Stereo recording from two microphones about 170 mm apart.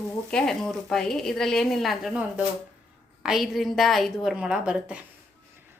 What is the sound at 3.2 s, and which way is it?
A woman's voice, centre (ahead or behind).